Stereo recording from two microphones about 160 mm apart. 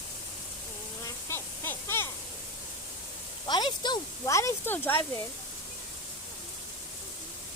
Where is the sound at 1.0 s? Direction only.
15° left (ahead or behind).